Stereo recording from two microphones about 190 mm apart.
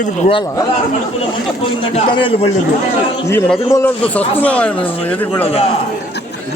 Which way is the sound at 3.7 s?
10° left (ahead or behind).